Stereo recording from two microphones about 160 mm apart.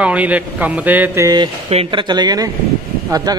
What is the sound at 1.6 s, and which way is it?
Speech, 35° right (ahead or behind).